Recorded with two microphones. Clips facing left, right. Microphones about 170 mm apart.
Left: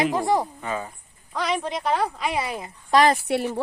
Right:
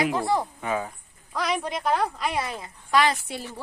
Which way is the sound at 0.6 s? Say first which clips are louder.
Right 2 dB; 10° right (ahead or behind).